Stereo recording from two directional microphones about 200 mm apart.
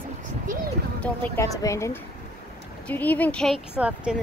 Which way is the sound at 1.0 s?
15° left (ahead or behind).